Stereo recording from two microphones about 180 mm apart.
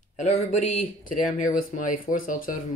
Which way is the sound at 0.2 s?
35° left (ahead or behind).